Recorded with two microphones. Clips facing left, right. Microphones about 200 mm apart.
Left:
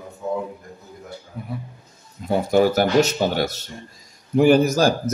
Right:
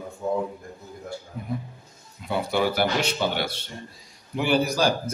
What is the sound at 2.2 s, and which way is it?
Speech, 45° left (ahead or behind).